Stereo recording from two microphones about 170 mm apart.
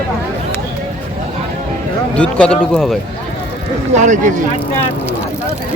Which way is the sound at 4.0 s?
45° right (ahead or behind).